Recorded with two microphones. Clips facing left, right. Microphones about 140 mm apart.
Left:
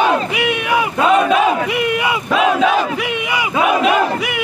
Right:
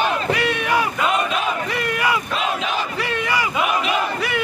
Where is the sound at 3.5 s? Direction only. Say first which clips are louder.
Left 7 dB; 85° left.